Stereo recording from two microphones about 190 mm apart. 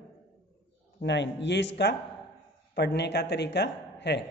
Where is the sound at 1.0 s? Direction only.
70° left (ahead or behind).